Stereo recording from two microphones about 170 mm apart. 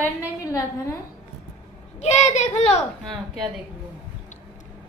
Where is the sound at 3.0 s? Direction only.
Centre (ahead or behind).